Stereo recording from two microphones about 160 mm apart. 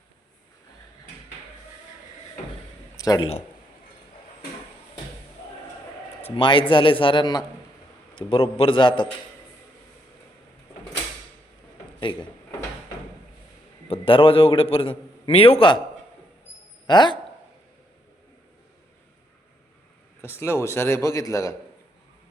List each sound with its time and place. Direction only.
3.0 s speech: 25° left (ahead or behind)
6.2 s a man's voice: 30° left (ahead or behind)
11.9 s drawer open or close: 30° left (ahead or behind)
13.9 s a man's voice: 35° left (ahead or behind)
16.8 s speech: 30° left (ahead or behind)
20.2 s speech: 15° left (ahead or behind)